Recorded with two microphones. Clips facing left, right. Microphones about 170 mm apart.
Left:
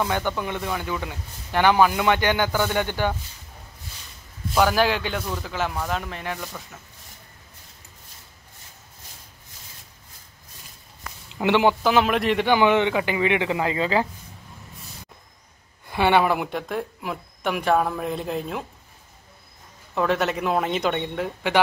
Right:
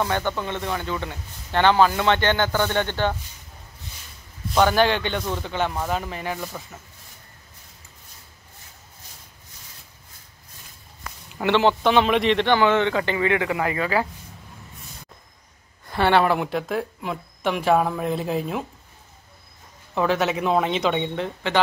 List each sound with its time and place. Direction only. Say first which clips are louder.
0.4 s speech: even; 10° left (ahead or behind)
4.6 s speech: right 1 dB; 5° left (ahead or behind)
11.2 s speech: even; 15° left (ahead or behind)
11.8 s speech: right 1 dB; 5° left (ahead or behind); by 14.0 s 25° left (ahead or behind)
15.9 s speech: right 1 dB; 10° left (ahead or behind)
19.9 s speech: right 1 dB; centre (ahead or behind)